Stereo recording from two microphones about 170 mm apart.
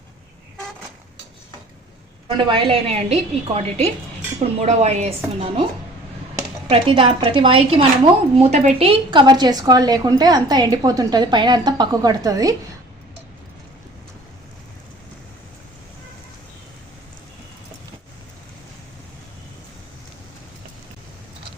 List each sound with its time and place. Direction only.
2.5 s a woman's voice: 30° right (ahead or behind)
6.7 s a woman's voice: 30° right (ahead or behind)